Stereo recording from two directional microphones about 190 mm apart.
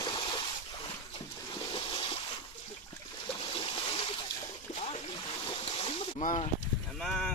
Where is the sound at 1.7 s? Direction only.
30° left (ahead or behind).